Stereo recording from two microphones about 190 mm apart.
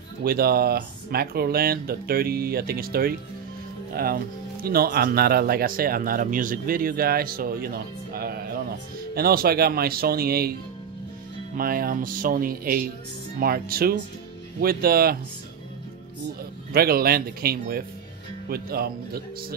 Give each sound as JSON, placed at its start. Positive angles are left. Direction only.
{"t": 0.2, "sound": "speech", "side_deg": -55}
{"t": 16.7, "sound": "speech", "side_deg": -55}